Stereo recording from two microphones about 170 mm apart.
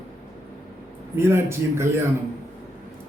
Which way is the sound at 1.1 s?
15° right (ahead or behind).